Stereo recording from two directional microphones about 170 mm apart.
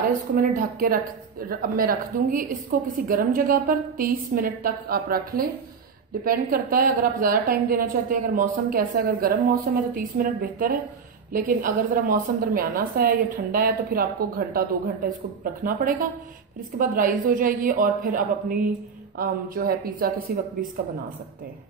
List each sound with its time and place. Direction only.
0.4 s a woman's voice: 55° right (ahead or behind)